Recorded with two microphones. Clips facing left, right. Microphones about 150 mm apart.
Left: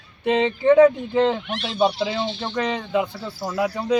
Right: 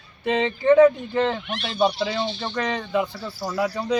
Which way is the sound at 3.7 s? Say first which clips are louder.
Left 5 dB; 5° left (ahead or behind).